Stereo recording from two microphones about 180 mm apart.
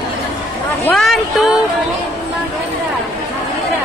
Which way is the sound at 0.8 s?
Centre (ahead or behind).